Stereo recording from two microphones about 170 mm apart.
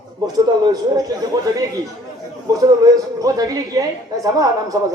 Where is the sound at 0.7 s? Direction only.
20° right (ahead or behind).